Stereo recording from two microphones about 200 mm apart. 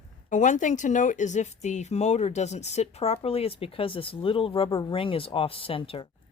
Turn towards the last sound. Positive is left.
turn(degrees=25)  # may be behind; listen again after turning